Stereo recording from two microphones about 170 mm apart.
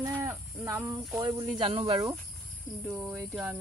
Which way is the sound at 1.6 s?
35° right (ahead or behind).